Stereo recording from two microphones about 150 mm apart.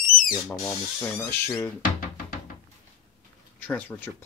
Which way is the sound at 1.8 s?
65° left (ahead or behind).